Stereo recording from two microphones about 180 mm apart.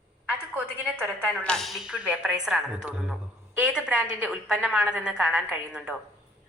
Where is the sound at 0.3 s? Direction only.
5° right (ahead or behind).